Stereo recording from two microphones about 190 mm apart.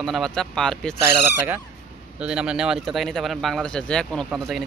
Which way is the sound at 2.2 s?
5° right (ahead or behind).